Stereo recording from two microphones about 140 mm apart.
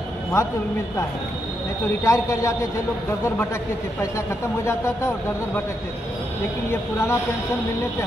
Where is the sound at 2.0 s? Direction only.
25° left (ahead or behind).